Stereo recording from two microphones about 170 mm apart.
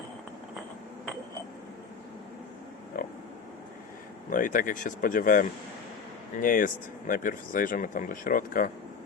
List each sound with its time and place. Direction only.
4.3 s speech: 50° left (ahead or behind)